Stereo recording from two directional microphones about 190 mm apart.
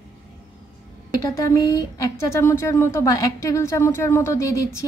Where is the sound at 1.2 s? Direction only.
15° left (ahead or behind).